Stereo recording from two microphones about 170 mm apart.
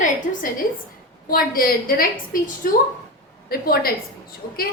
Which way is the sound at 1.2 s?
60° left (ahead or behind).